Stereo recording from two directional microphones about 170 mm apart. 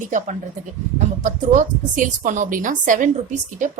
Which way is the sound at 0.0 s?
50° right (ahead or behind).